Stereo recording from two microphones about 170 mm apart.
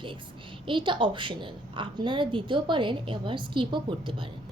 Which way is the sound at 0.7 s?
30° right (ahead or behind).